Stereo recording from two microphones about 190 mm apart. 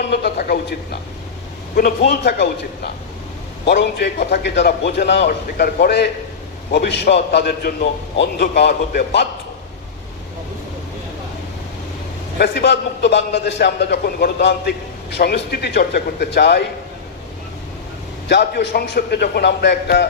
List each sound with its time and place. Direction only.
0.0 s a man's voice: 60° left (ahead or behind)
12.4 s a man's voice: 65° left (ahead or behind)
18.3 s a man's voice: 65° left (ahead or behind)